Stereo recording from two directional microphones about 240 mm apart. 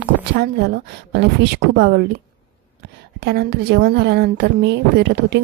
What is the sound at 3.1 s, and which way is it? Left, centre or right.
Speech, right.